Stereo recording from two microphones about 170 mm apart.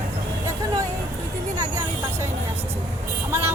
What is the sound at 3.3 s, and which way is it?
Speech, 15° right (ahead or behind).